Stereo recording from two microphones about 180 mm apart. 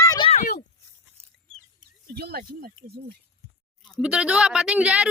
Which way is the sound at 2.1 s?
60° right (ahead or behind).